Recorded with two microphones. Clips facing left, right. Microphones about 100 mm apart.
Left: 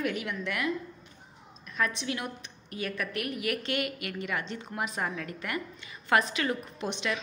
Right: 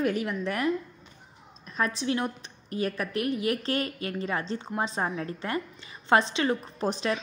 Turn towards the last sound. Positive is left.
turn(degrees=-35)  # may be behind; listen again after turning